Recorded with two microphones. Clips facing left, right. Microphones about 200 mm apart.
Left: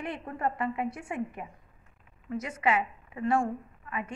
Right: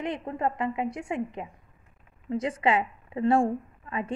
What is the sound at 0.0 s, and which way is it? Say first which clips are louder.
A woman's voice: right 3 dB; 20° right (ahead or behind).